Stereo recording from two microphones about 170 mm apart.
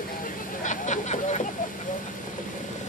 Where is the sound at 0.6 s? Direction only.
45° left (ahead or behind).